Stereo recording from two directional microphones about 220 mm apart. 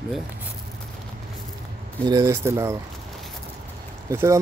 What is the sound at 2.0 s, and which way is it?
Speech, 15° right (ahead or behind).